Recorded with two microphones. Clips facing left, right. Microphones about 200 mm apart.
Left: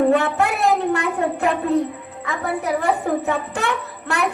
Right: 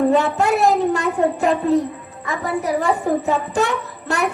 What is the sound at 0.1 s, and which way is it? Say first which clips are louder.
A woman's voice: right 2 dB; 60° left (ahead or behind).